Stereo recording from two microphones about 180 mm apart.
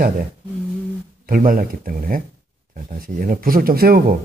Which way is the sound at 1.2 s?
50° right (ahead or behind).